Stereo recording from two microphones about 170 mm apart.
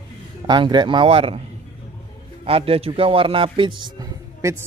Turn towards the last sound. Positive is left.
turn(degrees=-15)  # may be behind; listen again after turning